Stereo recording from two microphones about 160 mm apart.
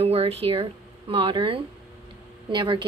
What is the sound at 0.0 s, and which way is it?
Speech, 40° right (ahead or behind).